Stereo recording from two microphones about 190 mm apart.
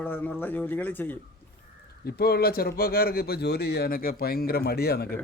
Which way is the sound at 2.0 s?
55° left (ahead or behind).